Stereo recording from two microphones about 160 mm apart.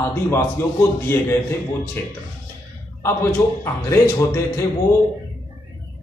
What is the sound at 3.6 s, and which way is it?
A man's voice, 15° left (ahead or behind).